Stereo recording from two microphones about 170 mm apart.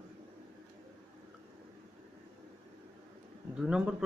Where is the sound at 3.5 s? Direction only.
5° right (ahead or behind).